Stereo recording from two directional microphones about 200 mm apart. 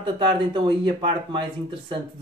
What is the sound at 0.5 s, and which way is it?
Speech, 25° right (ahead or behind).